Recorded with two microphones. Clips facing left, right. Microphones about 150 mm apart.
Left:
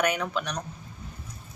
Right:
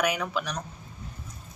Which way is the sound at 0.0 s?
5° right (ahead or behind).